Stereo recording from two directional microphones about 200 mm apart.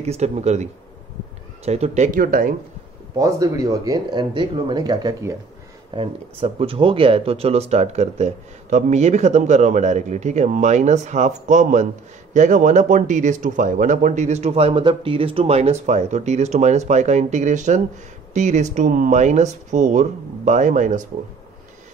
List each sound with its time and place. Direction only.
0.0 s speech: 35° right (ahead or behind)
3.2 s speech: 15° right (ahead or behind)
5.9 s speech: 30° right (ahead or behind)